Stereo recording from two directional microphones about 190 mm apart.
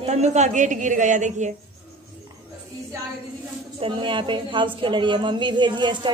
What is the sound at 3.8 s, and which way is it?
A woman's voice, 25° right (ahead or behind).